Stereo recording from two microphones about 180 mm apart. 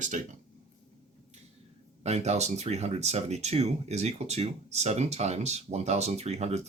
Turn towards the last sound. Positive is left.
turn(degrees=-40)  # may be behind; listen again after turning